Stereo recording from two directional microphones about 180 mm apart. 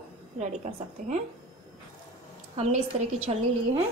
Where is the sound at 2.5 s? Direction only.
35° right (ahead or behind).